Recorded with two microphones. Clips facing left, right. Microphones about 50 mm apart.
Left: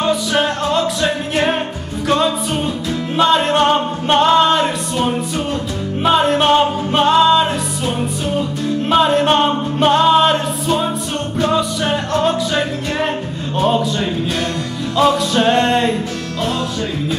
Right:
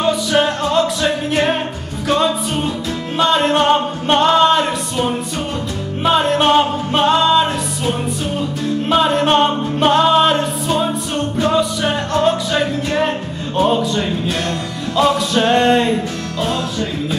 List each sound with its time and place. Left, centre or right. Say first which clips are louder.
0.0 s music: right 1 dB; centre